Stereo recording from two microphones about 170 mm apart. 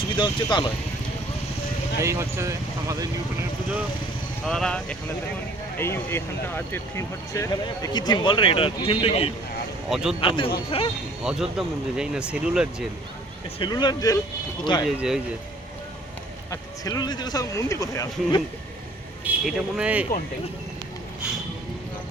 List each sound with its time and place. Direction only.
0.2 s speech: 25° left (ahead or behind)
2.0 s speech: 15° right (ahead or behind)
4.4 s speech: 5° left (ahead or behind); by 9.3 s 35° left (ahead or behind)
9.9 s speech: 5° right (ahead or behind)
10.2 s speech: 30° left (ahead or behind)
11.2 s speech: 5° right (ahead or behind)
13.6 s speech: 25° left (ahead or behind)
14.8 s speech: 5° right (ahead or behind)
16.5 s speech: 20° left (ahead or behind)
19.2 s speech: 5° right (ahead or behind)